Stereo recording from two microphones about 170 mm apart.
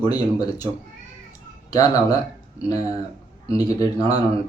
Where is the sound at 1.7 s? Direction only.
20° left (ahead or behind).